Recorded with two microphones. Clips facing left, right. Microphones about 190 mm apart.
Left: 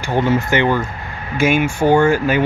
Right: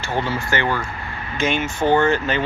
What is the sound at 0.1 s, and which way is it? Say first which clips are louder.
Speech: left 7 dB; 15° left (ahead or behind).